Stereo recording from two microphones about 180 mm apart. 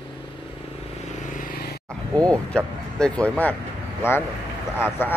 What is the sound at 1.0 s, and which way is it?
Vehicle, 45° left (ahead or behind).